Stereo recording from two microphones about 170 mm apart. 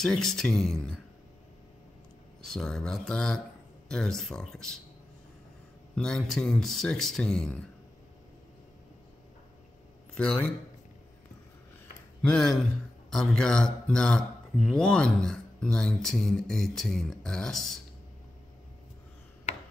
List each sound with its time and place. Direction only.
0.0 s speech: centre (ahead or behind)
2.4 s speech: 5° left (ahead or behind)
5.9 s speech: 5° left (ahead or behind)
10.1 s a man's voice: 5° left (ahead or behind)
12.2 s speech: 5° left (ahead or behind)
19.5 s mechanisms: 40° left (ahead or behind)